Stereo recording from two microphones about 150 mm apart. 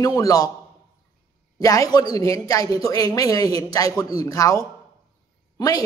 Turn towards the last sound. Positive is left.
turn(degrees=25)  # may be behind; listen again after turning